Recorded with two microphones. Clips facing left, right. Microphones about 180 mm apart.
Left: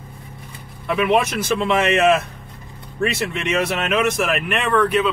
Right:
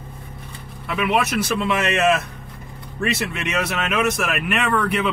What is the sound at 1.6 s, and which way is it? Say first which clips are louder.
Speech: left 6 dB; centre (ahead or behind).